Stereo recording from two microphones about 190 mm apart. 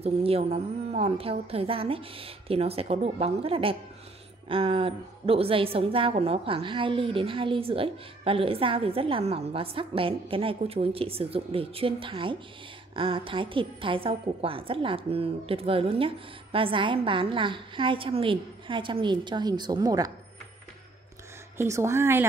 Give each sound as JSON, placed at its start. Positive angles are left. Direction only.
{"t": 0.0, "sound": "a woman's voice", "side_deg": -30}
{"t": 21.5, "sound": "a woman's voice", "side_deg": -15}